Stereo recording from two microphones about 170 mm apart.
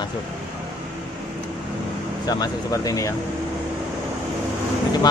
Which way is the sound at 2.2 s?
20° left (ahead or behind).